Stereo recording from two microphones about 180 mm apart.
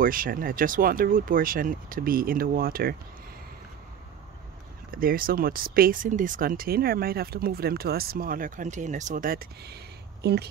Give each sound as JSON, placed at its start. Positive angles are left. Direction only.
{"t": 0.0, "sound": "speech", "side_deg": -50}
{"t": 4.9, "sound": "a woman's voice", "side_deg": -55}